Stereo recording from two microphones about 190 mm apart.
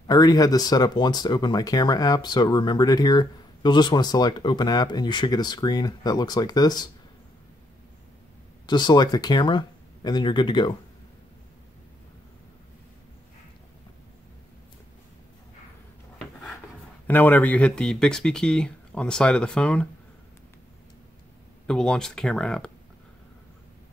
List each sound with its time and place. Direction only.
0.0 s speech: 20° left (ahead or behind)
8.6 s speech: 25° left (ahead or behind)
17.1 s speech: 10° left (ahead or behind)
21.6 s speech: 5° left (ahead or behind)